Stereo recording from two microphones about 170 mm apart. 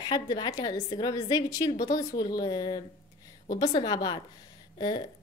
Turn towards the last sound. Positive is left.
turn(degrees=25)  # may be behind; listen again after turning